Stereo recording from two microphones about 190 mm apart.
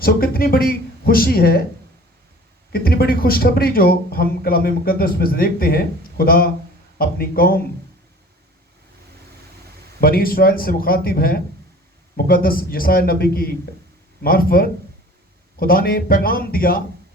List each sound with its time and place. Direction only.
0.0 s a man's voice: 50° left (ahead or behind)
2.7 s a man's voice: 55° left (ahead or behind)
10.0 s a man's voice: 50° left (ahead or behind)